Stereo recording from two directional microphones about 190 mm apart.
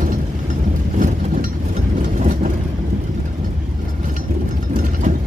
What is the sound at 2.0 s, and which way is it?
Vehicle, 40° right (ahead or behind).